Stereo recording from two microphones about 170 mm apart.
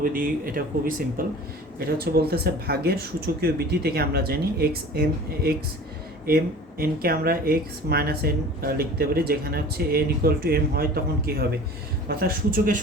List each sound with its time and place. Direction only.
0.0 s speech: 55° right (ahead or behind)